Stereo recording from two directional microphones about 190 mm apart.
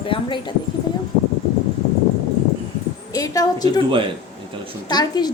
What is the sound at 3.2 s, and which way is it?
Speech, 20° left (ahead or behind).